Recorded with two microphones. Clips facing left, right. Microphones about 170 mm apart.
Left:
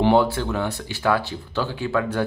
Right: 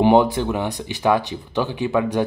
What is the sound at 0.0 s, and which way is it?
Speech, 15° right (ahead or behind).